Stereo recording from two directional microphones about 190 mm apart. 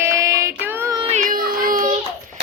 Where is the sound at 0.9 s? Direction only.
30° right (ahead or behind).